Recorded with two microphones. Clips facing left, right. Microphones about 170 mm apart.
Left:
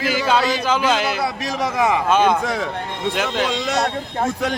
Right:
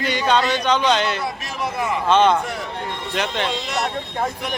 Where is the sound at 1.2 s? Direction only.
85° left.